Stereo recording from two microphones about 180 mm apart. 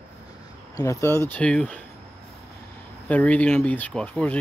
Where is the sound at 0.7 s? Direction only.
15° left (ahead or behind).